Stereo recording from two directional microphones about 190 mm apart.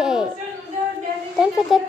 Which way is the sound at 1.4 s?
Centre (ahead or behind).